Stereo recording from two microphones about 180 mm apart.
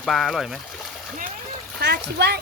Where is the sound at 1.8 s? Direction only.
65° right (ahead or behind).